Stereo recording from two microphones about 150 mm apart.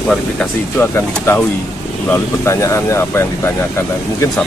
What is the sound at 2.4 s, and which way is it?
Speech, 20° left (ahead or behind).